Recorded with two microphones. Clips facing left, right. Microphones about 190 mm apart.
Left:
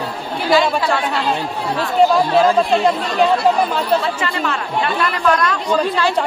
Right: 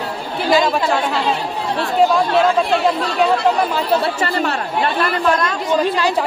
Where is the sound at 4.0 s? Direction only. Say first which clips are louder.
Right 2 dB; 40° right (ahead or behind).